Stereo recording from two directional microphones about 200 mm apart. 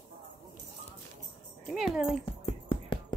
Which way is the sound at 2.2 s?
25° left (ahead or behind).